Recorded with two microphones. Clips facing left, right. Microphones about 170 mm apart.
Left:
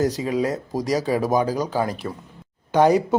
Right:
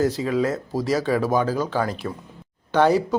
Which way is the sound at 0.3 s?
15° left (ahead or behind).